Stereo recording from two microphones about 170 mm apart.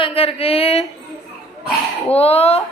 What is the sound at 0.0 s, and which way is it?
Speech, 35° left (ahead or behind).